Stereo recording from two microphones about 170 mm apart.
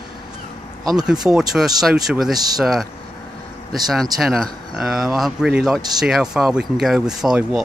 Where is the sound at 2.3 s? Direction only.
20° right (ahead or behind).